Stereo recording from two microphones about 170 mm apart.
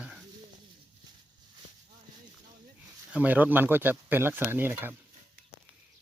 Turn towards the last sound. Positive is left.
turn(degrees=-10)  # may be behind; listen again after turning